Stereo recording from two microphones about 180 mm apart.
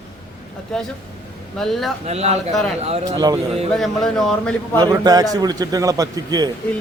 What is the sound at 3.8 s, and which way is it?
Speech, centre (ahead or behind).